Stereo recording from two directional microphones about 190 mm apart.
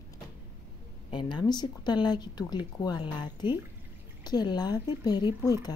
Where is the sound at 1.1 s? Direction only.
25° left (ahead or behind).